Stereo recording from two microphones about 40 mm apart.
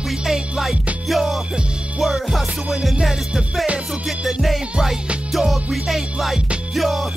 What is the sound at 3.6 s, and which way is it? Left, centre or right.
Music, right.